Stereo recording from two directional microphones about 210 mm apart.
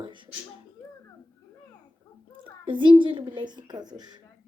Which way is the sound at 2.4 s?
25° right (ahead or behind).